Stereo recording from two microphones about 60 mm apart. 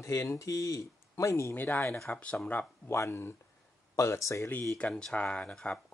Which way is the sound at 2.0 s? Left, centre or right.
Left.